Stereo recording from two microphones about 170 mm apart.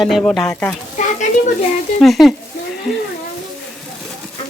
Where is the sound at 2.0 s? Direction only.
Centre (ahead or behind).